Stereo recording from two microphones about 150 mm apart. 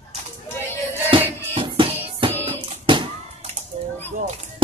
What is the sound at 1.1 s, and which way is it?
Music, 35° right (ahead or behind).